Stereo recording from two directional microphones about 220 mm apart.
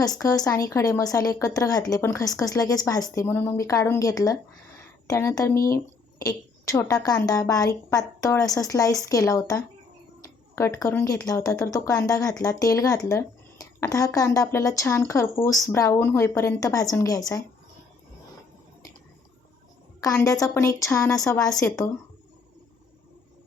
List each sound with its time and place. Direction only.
0.0 s speech: 15° left (ahead or behind)
20.0 s speech: 15° left (ahead or behind)